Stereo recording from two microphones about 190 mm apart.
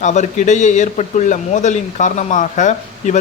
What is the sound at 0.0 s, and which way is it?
Speech, 40° left (ahead or behind).